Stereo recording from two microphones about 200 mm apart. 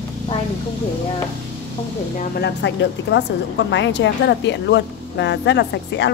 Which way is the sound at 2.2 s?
55° left (ahead or behind).